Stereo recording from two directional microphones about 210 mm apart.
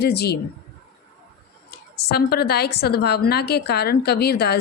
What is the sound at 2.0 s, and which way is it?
A woman's voice, 50° left (ahead or behind).